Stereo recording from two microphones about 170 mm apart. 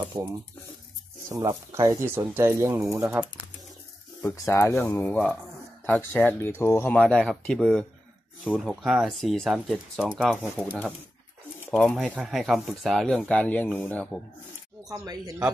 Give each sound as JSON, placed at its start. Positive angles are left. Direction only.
{"t": 0.2, "sound": "speech", "side_deg": -25}
{"t": 4.2, "sound": "speech", "side_deg": 15}
{"t": 11.8, "sound": "speech", "side_deg": 5}
{"t": 14.9, "sound": "speech", "side_deg": -20}